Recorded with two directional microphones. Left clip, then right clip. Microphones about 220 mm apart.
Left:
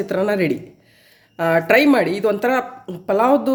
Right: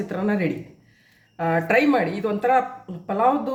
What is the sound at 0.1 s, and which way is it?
Speech, 50° left (ahead or behind).